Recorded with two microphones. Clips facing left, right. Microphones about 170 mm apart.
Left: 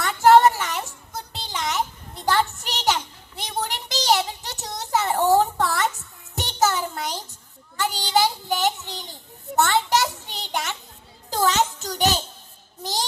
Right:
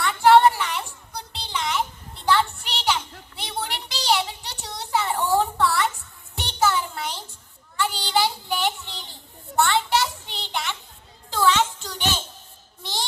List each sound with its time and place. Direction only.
0.0 s music: 45° left (ahead or behind)
7.8 s child singing: 45° left (ahead or behind)
9.6 s a sound: 45° left (ahead or behind)
12.8 s music: 40° left (ahead or behind)